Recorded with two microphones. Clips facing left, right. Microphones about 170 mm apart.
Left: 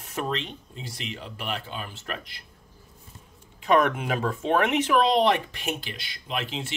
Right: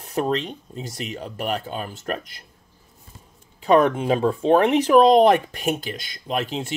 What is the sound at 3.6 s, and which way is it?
Speech, 30° right (ahead or behind).